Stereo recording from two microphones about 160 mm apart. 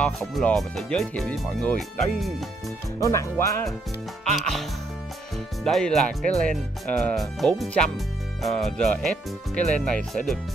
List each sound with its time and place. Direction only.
0.0 s speech: 5° left (ahead or behind)
3.0 s speech: 20° left (ahead or behind)
4.2 s speech: 5° left (ahead or behind)